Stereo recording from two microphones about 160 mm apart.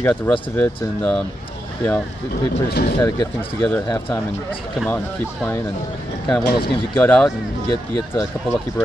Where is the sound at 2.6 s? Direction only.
90° left.